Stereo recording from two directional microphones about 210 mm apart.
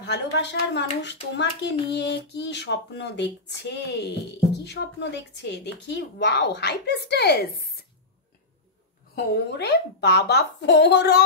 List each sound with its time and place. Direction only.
0.0 s a woman's voice: 55° left (ahead or behind)
9.1 s a woman's voice: 55° left (ahead or behind)